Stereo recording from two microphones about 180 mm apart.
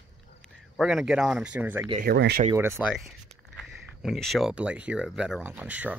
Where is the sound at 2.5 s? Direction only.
15° right (ahead or behind).